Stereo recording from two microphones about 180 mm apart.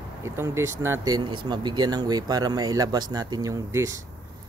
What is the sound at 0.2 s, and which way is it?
Speech, 15° right (ahead or behind).